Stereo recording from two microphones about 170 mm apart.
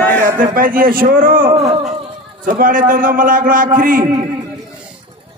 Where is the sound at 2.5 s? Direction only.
55° right (ahead or behind).